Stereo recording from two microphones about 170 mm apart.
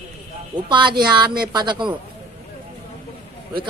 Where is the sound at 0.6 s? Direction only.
30° right (ahead or behind).